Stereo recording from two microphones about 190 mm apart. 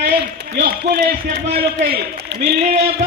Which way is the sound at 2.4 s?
35° right (ahead or behind).